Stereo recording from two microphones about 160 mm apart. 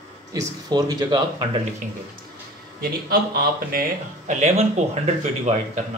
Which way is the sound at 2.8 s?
70° right (ahead or behind).